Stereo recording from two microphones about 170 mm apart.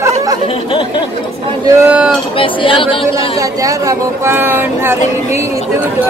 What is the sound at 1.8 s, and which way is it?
Speech, 10° right (ahead or behind).